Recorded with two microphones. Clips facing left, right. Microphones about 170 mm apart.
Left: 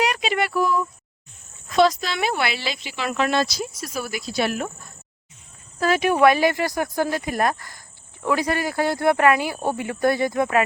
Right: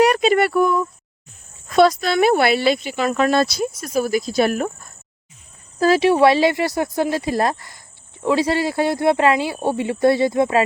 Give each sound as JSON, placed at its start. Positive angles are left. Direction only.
{"t": 0.0, "sound": "a sound", "side_deg": -50}
{"t": 1.7, "sound": "cricket", "side_deg": -55}
{"t": 3.4, "sound": "cricket", "side_deg": -55}
{"t": 5.8, "sound": "speech", "side_deg": -30}